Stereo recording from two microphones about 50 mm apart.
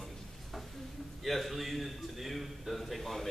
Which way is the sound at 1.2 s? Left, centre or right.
Centre.